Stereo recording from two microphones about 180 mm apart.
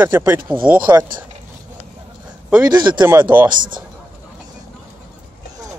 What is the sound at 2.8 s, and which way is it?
Speech, 25° right (ahead or behind).